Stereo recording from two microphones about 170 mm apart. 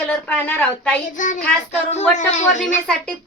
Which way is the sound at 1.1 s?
50° left (ahead or behind).